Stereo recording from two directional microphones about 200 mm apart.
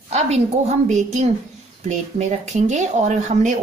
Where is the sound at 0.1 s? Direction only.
35° right (ahead or behind).